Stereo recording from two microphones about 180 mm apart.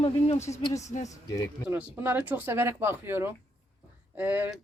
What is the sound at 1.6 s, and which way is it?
Speech, 10° right (ahead or behind).